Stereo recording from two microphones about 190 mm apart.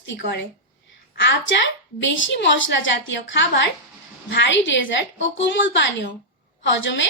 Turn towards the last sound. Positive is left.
turn(degrees=75)  # may be behind; listen again after turning